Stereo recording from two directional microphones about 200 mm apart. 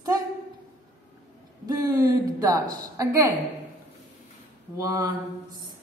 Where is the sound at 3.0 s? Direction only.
15° right (ahead or behind).